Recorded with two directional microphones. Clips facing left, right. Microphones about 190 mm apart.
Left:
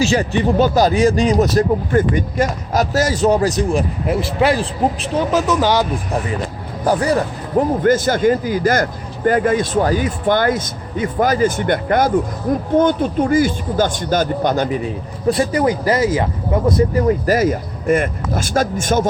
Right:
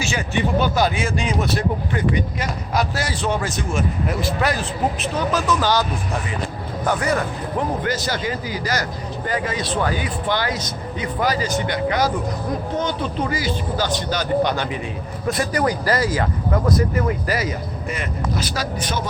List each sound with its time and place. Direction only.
0.0 s a man's voice: 35° left (ahead or behind)
6.8 s a man's voice: 35° left (ahead or behind)
15.3 s a man's voice: 25° left (ahead or behind); by 19.0 s 45° left (ahead or behind)